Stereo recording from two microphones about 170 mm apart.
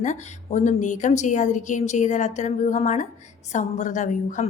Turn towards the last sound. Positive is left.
turn(degrees=45)  # may be behind; listen again after turning